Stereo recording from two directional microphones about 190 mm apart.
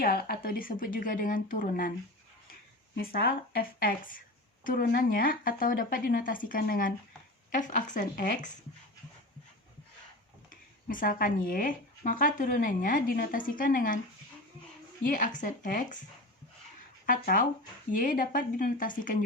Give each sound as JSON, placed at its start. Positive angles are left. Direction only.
{"t": 0.0, "sound": "speech", "side_deg": 55}
{"t": 2.9, "sound": "speech", "side_deg": 55}
{"t": 10.5, "sound": "speech", "side_deg": 45}
{"t": 15.0, "sound": "speech", "side_deg": 45}
{"t": 17.2, "sound": "speech", "side_deg": 45}